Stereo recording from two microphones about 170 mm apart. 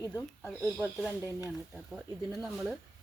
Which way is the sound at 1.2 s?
10° right (ahead or behind).